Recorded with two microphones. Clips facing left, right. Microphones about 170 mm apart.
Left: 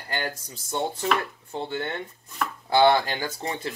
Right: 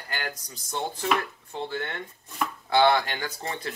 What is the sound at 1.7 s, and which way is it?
Speech, 30° left (ahead or behind).